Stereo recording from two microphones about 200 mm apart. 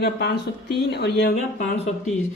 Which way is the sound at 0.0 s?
55° left (ahead or behind).